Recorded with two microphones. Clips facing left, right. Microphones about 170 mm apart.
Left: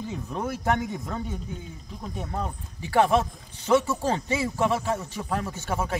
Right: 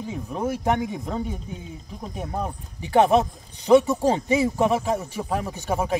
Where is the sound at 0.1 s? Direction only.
10° right (ahead or behind).